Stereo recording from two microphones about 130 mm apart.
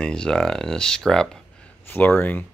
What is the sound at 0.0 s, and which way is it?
Speech, 5° left (ahead or behind).